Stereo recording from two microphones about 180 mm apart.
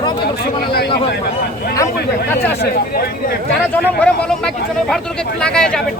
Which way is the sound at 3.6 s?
5° left (ahead or behind).